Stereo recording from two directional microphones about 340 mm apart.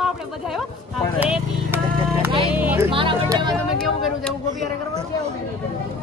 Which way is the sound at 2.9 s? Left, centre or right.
Centre.